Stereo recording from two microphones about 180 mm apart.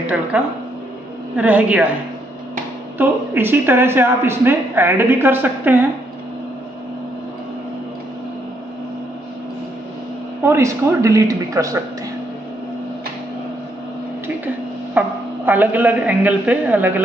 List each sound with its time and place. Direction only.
0.3 s a woman's voice: 5° right (ahead or behind)
3.0 s a woman's voice: 10° right (ahead or behind)
10.4 s a woman's voice: 15° right (ahead or behind)
15.0 s a man's voice: 10° right (ahead or behind)